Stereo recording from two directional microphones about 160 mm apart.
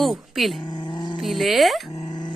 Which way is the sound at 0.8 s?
30° left (ahead or behind).